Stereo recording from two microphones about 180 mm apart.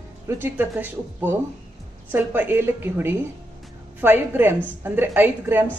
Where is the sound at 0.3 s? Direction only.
10° right (ahead or behind).